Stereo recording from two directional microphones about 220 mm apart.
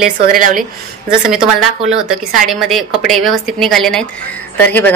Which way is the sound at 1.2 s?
Centre (ahead or behind).